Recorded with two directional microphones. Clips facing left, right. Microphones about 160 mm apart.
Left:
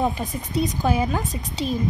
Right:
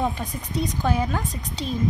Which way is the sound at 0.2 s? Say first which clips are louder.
Left 3 dB; 5° left (ahead or behind).